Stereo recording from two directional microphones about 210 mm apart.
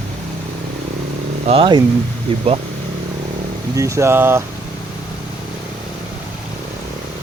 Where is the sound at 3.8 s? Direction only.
15° right (ahead or behind).